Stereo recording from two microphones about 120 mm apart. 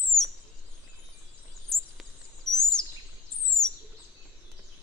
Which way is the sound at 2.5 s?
5° left (ahead or behind).